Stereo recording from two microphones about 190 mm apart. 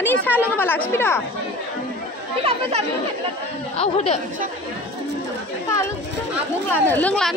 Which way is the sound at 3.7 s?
35° left (ahead or behind).